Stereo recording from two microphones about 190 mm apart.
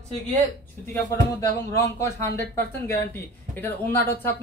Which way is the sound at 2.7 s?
10° left (ahead or behind).